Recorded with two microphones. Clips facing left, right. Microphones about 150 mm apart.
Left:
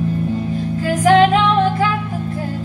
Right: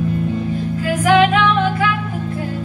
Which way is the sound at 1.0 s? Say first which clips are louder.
Left 2 dB; 40° left (ahead or behind).